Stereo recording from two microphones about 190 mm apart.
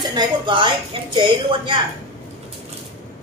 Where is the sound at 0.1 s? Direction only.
25° right (ahead or behind).